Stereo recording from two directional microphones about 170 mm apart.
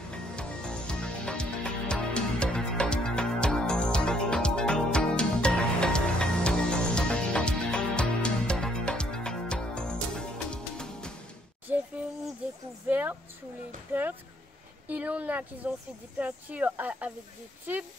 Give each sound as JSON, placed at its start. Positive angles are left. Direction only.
{"t": 0.1, "sound": "music", "side_deg": 5}
{"t": 11.6, "sound": "a sound", "side_deg": -10}
{"t": 12.8, "sound": "a woman's voice", "side_deg": -10}